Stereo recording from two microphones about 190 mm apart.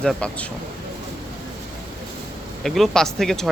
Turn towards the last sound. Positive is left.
turn(degrees=0)  # may be behind; listen again after turning